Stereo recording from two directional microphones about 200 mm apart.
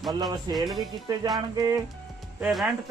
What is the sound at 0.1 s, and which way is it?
Speech, 20° right (ahead or behind).